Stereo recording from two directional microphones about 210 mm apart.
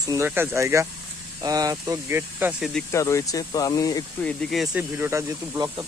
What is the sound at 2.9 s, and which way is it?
Speech, 15° left (ahead or behind).